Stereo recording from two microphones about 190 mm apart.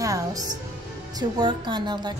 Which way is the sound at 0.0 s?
20° right (ahead or behind).